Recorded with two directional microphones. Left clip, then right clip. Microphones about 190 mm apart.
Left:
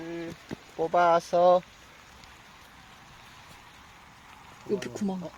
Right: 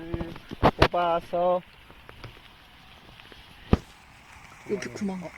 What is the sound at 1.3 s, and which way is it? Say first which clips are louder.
Speech: left 4 dB; 30° left (ahead or behind).